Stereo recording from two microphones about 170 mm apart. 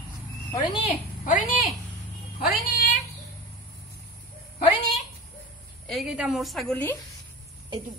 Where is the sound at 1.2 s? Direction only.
50° left (ahead or behind).